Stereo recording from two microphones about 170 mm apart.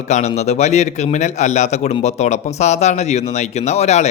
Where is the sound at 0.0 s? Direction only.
40° left (ahead or behind).